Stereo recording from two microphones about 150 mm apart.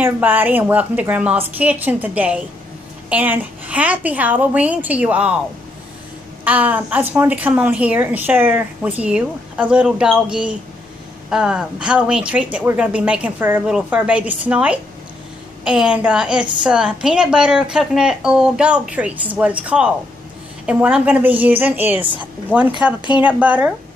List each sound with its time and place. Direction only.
0.0 s a woman's voice: 10° right (ahead or behind)
6.4 s a woman's voice: 10° right (ahead or behind)
22.0 s a woman's voice: 35° right (ahead or behind)
22.5 s a woman's voice: 10° right (ahead or behind)